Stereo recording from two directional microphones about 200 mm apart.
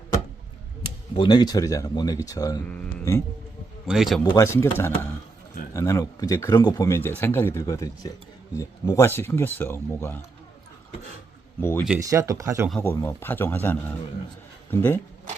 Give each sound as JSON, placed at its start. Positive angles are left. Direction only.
{"t": 1.1, "sound": "speech", "side_deg": 25}
{"t": 3.8, "sound": "speech", "side_deg": 0}
{"t": 4.2, "sound": "speech", "side_deg": 15}
{"t": 11.6, "sound": "speech", "side_deg": 10}
{"t": 11.9, "sound": "speech", "side_deg": -15}
{"t": 12.9, "sound": "speech", "side_deg": 10}